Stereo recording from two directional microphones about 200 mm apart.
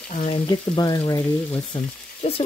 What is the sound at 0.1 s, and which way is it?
Speech, 35° left (ahead or behind).